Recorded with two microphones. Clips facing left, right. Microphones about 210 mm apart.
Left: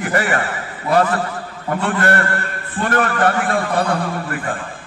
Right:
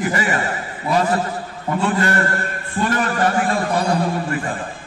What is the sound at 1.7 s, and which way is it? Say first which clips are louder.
A man's voice: left 1 dB; 55° left (ahead or behind).